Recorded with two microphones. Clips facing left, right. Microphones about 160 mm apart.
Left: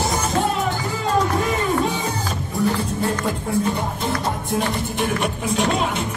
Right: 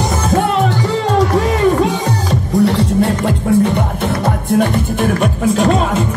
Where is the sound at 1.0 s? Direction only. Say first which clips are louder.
Right 5 dB; 80° right.